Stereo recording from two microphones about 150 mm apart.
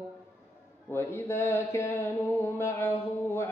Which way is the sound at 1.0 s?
20° left (ahead or behind).